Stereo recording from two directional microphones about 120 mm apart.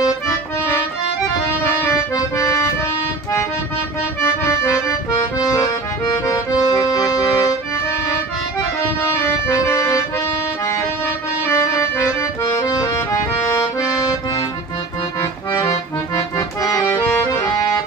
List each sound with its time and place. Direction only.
4.2 s accordion: 25° left (ahead or behind)
9.2 s accordion: 25° left (ahead or behind)
11.4 s accordion: 25° left (ahead or behind)
16.3 s accordion: 30° left (ahead or behind)
17.0 s accordion: 15° left (ahead or behind)